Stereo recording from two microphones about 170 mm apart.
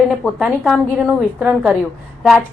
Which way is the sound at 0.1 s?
5° right (ahead or behind).